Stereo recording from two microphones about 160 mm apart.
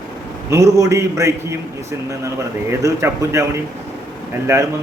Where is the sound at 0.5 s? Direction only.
20° right (ahead or behind).